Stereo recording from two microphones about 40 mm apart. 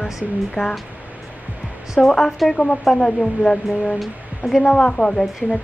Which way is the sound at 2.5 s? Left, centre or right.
Left.